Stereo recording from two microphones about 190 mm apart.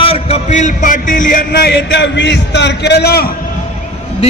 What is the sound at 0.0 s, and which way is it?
A man's voice, 30° left (ahead or behind).